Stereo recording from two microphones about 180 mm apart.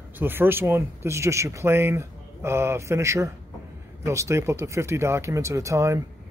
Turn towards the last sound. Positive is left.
turn(degrees=-15)  # may be behind; listen again after turning